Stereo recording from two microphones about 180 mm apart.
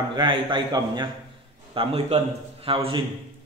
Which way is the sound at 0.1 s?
25° right (ahead or behind).